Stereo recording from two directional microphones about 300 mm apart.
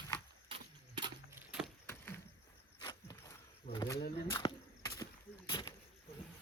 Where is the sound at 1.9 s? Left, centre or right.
Centre.